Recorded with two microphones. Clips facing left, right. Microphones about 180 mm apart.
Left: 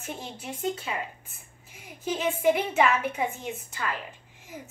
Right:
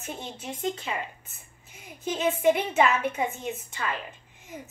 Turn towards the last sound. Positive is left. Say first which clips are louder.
# right 1 dB
turn(degrees=0)  # may be behind; listen again after turning